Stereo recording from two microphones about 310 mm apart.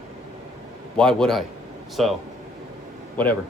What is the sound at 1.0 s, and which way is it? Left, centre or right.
Speech, centre.